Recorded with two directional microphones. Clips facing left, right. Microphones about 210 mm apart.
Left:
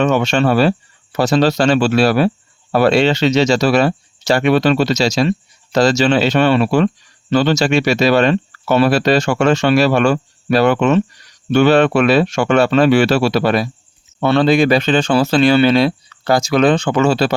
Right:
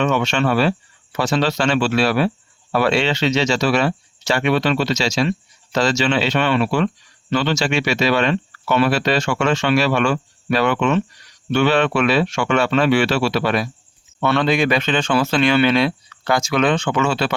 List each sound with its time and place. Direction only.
0.0 s speech: 40° left (ahead or behind)